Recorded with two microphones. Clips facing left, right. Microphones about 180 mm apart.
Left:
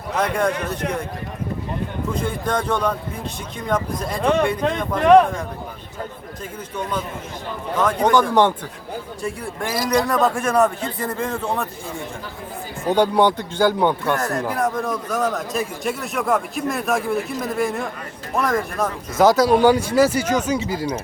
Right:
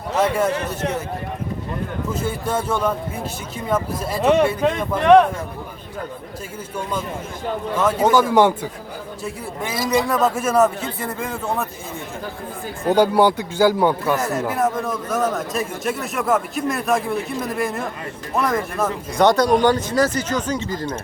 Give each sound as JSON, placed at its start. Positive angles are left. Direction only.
{"t": 0.2, "sound": "speech", "side_deg": -5}
{"t": 0.5, "sound": "a man's voice", "side_deg": -25}
{"t": 2.1, "sound": "speech", "side_deg": -5}
{"t": 7.8, "sound": "speech", "side_deg": -5}
{"t": 12.9, "sound": "speech", "side_deg": -5}